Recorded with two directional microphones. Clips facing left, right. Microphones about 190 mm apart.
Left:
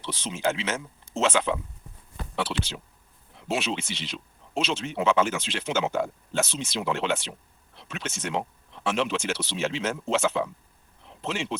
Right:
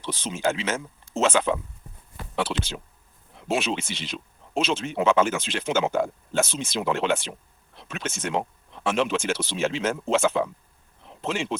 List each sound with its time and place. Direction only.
0.0 s speech: 45° right (ahead or behind)